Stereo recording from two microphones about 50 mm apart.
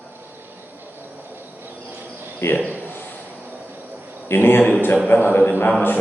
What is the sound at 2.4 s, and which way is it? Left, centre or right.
Speech, left.